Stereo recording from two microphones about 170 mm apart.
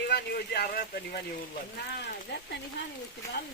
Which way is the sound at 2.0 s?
75° left (ahead or behind).